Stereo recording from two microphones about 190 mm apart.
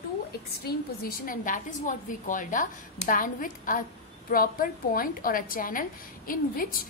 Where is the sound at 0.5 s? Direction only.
50° left (ahead or behind).